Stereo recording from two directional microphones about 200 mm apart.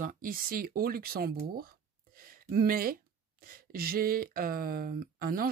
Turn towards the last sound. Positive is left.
turn(degrees=-45)  # may be behind; listen again after turning